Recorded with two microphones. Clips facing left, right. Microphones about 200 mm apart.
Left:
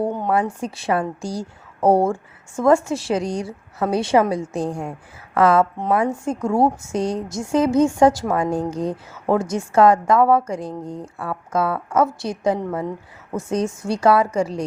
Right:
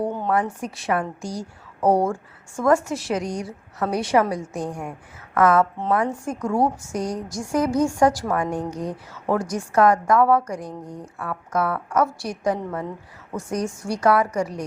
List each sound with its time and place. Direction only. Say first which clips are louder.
0.1 s a woman's voice: left 2 dB; 20° left (ahead or behind)